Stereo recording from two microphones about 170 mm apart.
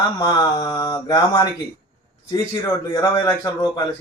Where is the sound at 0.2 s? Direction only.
25° left (ahead or behind).